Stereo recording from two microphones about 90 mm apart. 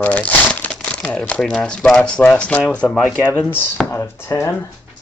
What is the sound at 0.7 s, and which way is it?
Crumpling, 10° left (ahead or behind).